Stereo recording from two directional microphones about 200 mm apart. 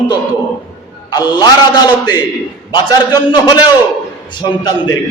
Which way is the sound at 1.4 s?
20° left (ahead or behind).